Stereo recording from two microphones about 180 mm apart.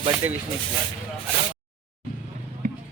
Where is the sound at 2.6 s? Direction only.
50° right (ahead or behind).